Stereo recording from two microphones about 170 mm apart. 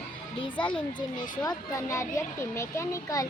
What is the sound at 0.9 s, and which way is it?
Speech, 25° left (ahead or behind).